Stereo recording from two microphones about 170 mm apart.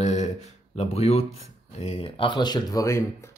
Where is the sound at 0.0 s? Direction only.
40° left (ahead or behind).